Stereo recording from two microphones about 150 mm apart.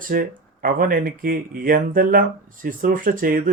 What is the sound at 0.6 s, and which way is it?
Speech, 70° right (ahead or behind).